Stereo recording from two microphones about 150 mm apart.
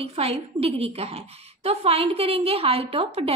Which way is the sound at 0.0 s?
40° right (ahead or behind).